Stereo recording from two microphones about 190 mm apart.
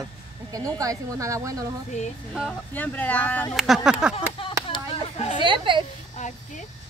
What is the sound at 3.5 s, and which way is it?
Speech, centre (ahead or behind).